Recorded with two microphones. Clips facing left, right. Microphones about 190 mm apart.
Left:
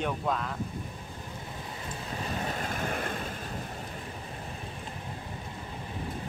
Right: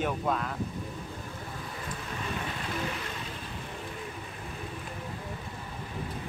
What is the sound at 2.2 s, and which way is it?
Vehicle, 40° left (ahead or behind).